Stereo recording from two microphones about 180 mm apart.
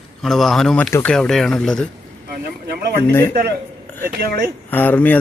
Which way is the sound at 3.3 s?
55° right (ahead or behind).